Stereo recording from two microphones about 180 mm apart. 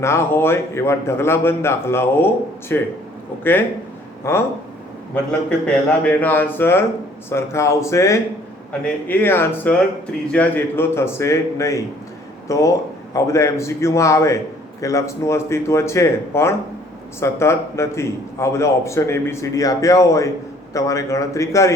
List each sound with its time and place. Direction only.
0.0 s a man's voice: 15° left (ahead or behind)
4.3 s a man's voice: 15° left (ahead or behind)